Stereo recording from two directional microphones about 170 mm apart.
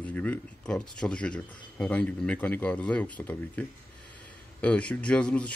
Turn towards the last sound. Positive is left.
turn(degrees=5)  # may be behind; listen again after turning